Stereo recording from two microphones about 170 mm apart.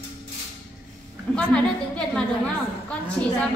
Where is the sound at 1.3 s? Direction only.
5° left (ahead or behind).